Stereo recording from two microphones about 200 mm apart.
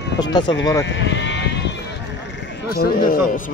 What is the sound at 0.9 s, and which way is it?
Sheep, 60° left (ahead or behind).